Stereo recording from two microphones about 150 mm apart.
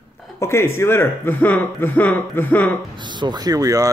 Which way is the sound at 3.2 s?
25° right (ahead or behind).